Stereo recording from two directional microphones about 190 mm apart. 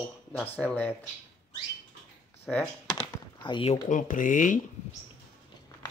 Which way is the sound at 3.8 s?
45° left (ahead or behind).